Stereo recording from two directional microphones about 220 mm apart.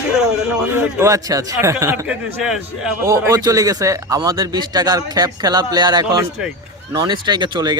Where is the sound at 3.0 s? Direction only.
15° right (ahead or behind).